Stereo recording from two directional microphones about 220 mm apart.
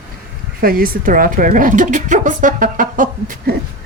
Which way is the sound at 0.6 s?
40° right (ahead or behind).